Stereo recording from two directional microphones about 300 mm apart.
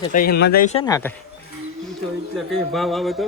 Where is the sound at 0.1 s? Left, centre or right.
Left.